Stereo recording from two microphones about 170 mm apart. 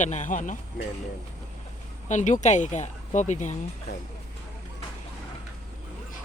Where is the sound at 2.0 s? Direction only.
45° left (ahead or behind).